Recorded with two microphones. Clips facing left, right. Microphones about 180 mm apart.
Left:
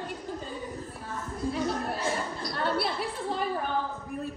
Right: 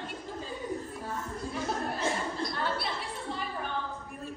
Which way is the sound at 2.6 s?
60° left (ahead or behind).